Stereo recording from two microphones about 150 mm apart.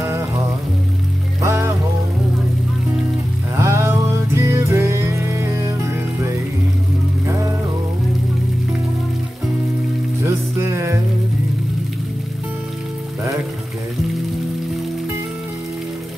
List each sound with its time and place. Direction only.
0.0 s music: 20° right (ahead or behind)
1.4 s music: 20° right (ahead or behind)
3.5 s music: 20° right (ahead or behind)
7.2 s music: 20° right (ahead or behind)
10.2 s music: 20° right (ahead or behind)